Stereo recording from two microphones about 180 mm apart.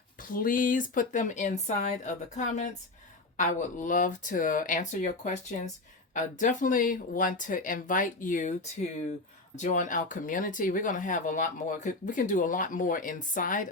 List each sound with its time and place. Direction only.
0.2 s speech: 50° left (ahead or behind)